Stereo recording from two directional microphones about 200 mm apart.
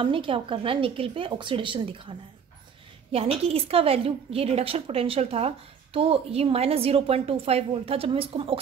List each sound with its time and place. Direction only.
0.0 s a woman's voice: 25° right (ahead or behind)